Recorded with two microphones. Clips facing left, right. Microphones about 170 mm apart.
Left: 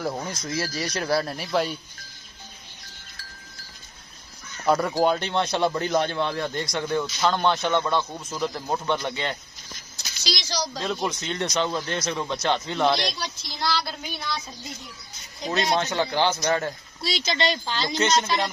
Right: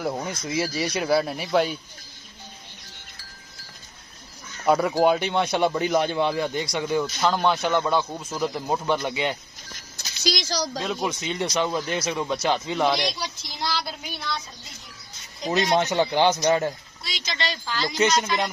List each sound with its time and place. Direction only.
0.0 s speech: 5° right (ahead or behind)
4.6 s a man's voice: 5° right (ahead or behind)
9.9 s a child's voice: 50° right (ahead or behind)
10.8 s a man's voice: 5° right (ahead or behind)
15.5 s a man's voice: 15° right (ahead or behind)
17.0 s speech: 30° left (ahead or behind)